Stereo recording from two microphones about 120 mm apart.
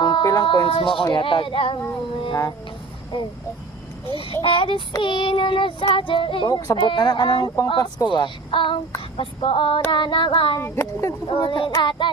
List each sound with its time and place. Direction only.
0.0 s a sound: 35° left (ahead or behind)
0.4 s speech: 40° left (ahead or behind)
4.4 s speech: 45° left (ahead or behind)
6.5 s speech: 30° left (ahead or behind)
6.7 s speech: 40° left (ahead or behind)
10.6 s speech: 20° left (ahead or behind)
11.3 s speech: 45° left (ahead or behind)